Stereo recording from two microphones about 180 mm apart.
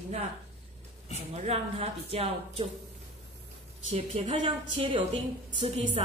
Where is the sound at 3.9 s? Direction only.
30° right (ahead or behind).